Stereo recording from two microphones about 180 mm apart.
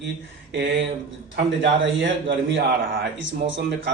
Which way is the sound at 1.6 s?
85° right.